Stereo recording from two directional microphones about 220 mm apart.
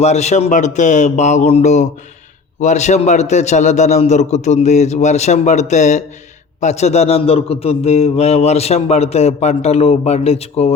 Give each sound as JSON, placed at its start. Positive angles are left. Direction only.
{"t": 0.0, "sound": "a man's voice", "side_deg": 30}